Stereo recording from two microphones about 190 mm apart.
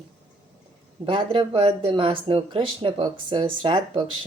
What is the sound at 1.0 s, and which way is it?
A woman's voice, 25° right (ahead or behind).